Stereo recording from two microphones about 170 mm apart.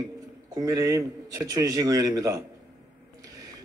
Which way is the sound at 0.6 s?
20° right (ahead or behind).